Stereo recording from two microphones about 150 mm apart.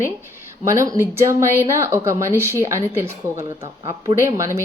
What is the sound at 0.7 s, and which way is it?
A woman's voice, 20° right (ahead or behind).